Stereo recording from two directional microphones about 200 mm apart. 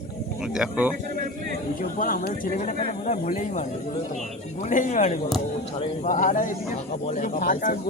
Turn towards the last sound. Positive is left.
turn(degrees=45)  # may be behind; listen again after turning